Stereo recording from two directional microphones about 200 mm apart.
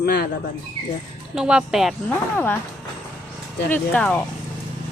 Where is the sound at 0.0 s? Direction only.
50° left (ahead or behind).